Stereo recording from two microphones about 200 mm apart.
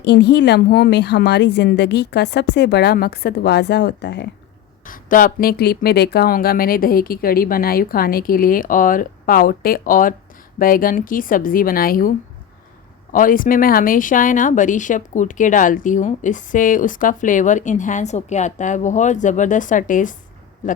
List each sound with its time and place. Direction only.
0.0 s speech: 60° left (ahead or behind)
4.9 s speech: 45° left (ahead or behind)